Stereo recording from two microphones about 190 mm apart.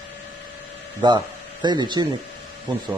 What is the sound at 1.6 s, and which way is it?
Speech, 25° right (ahead or behind).